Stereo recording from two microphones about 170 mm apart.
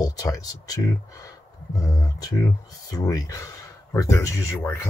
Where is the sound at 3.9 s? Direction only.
20° left (ahead or behind).